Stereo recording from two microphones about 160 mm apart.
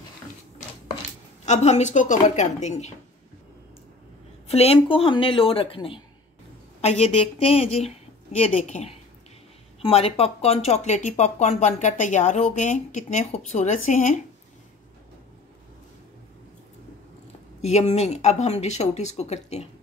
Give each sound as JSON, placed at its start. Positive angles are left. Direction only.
{"t": 1.4, "sound": "speech", "side_deg": 45}
{"t": 4.5, "sound": "a woman's voice", "side_deg": 40}
{"t": 17.6, "sound": "speech", "side_deg": 45}